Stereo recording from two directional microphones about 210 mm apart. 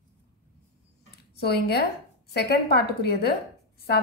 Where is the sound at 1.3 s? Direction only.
50° left (ahead or behind).